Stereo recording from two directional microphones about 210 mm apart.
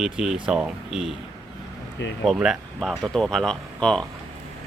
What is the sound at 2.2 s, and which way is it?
Speech, 5° right (ahead or behind).